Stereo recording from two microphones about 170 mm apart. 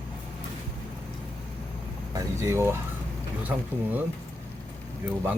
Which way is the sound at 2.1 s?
15° right (ahead or behind).